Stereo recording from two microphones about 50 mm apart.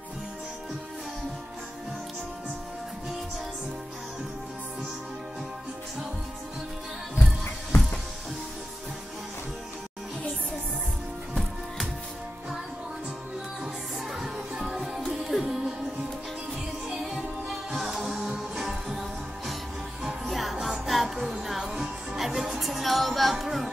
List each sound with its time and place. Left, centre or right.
7.2 s music: left
14.1 s music: centre
16.9 s music: centre